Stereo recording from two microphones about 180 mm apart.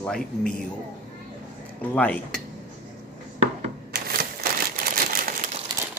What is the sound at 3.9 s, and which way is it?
Typewriter, 55° right (ahead or behind).